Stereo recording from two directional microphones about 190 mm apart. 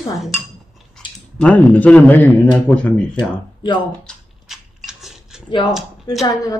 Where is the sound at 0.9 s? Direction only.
5° left (ahead or behind).